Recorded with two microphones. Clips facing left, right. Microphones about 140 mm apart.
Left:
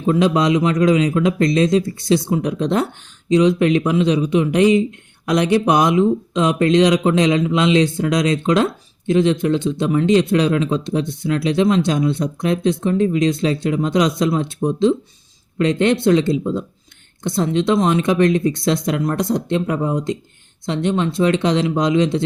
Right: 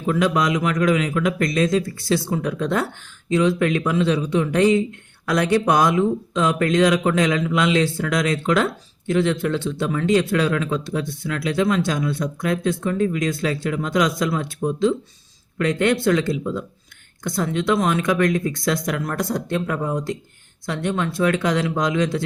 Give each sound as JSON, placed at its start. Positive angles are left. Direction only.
{"t": 0.0, "sound": "speech", "side_deg": 25}